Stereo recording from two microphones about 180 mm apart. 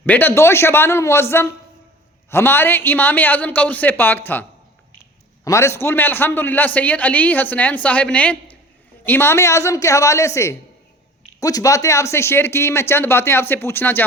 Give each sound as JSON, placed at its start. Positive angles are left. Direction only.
{"t": 0.0, "sound": "a man's voice", "side_deg": 10}
{"t": 5.5, "sound": "a man's voice", "side_deg": 15}